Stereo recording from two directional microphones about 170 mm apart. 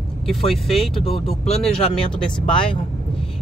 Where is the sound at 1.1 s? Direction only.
35° left (ahead or behind).